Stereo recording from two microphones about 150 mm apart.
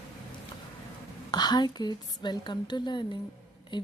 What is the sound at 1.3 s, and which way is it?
A woman's voice, 30° left (ahead or behind).